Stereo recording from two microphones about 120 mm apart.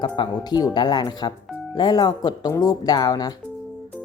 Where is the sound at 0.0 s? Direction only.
35° left (ahead or behind).